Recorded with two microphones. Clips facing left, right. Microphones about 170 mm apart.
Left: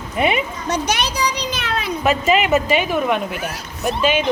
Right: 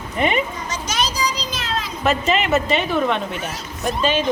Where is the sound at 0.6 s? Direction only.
65° left (ahead or behind).